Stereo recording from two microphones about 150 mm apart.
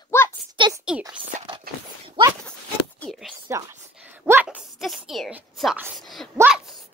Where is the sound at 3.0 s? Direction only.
Centre (ahead or behind).